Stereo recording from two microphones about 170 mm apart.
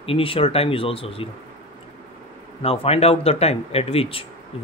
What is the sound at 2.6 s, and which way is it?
Speech, 35° left (ahead or behind).